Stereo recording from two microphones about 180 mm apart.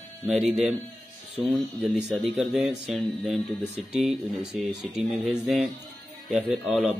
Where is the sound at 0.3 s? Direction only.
5° right (ahead or behind).